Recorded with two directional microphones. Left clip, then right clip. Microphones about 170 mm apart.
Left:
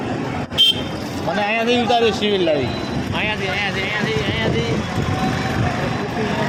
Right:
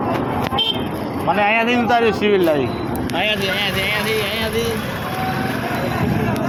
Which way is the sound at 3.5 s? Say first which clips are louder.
Right 2 dB; 30° right (ahead or behind).